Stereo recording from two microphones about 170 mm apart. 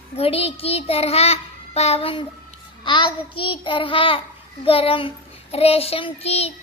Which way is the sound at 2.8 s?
30° left (ahead or behind).